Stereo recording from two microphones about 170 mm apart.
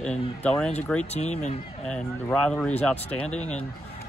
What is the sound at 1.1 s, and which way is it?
Speech, 40° left (ahead or behind).